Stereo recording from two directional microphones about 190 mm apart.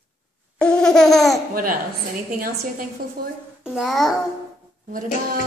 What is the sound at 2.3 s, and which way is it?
Speech, 45° right (ahead or behind).